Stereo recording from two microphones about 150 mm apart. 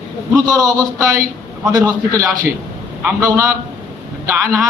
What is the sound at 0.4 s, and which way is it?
A man's voice, 25° right (ahead or behind).